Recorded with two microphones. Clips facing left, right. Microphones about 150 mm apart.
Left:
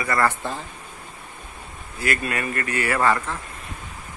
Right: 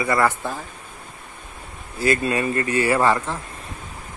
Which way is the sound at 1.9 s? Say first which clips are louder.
Right 5 dB; 25° right (ahead or behind).